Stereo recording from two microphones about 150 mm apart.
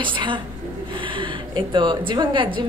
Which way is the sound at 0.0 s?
35° right (ahead or behind).